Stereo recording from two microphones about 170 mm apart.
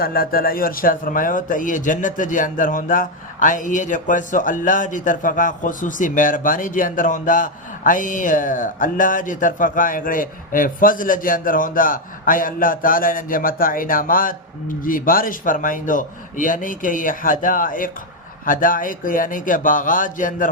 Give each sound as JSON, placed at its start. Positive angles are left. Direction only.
{"t": 0.0, "sound": "a man's voice", "side_deg": 60}